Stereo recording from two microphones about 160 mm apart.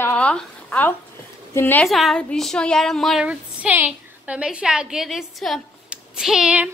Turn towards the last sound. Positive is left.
turn(degrees=-5)  # may be behind; listen again after turning